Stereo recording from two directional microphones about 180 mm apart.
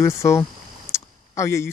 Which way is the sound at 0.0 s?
15° left (ahead or behind).